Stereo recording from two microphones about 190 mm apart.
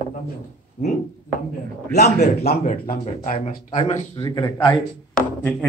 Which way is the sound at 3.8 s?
30° left (ahead or behind).